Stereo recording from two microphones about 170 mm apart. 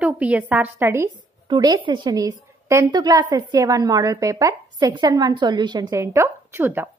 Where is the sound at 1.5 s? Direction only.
25° right (ahead or behind).